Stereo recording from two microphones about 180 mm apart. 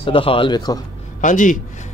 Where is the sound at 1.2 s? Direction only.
45° left (ahead or behind).